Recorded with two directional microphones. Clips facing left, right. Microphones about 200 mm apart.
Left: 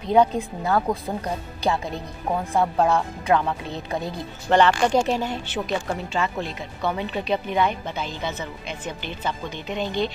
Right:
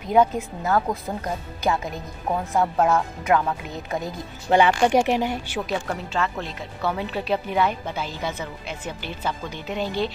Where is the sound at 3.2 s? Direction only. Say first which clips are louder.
Even; 30° left (ahead or behind).